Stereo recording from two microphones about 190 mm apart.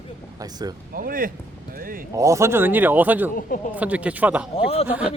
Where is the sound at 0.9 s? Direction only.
45° right (ahead or behind).